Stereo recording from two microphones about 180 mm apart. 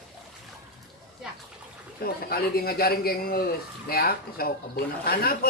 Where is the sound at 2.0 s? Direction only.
55° left (ahead or behind).